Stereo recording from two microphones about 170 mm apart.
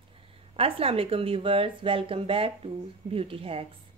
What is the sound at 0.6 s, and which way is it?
A woman's voice, 35° right (ahead or behind).